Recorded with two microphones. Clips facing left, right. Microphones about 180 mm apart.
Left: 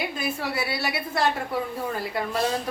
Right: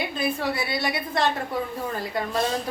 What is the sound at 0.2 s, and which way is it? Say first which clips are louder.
A woman's voice: right 2 dB; 5° left (ahead or behind).